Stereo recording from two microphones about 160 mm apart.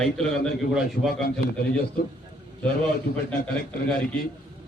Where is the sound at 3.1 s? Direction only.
90° left.